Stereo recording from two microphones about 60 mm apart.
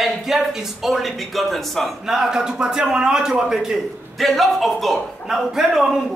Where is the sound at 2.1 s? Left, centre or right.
Centre.